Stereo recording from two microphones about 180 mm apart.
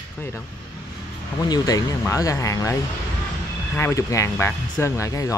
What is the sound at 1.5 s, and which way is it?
Speech, 20° left (ahead or behind).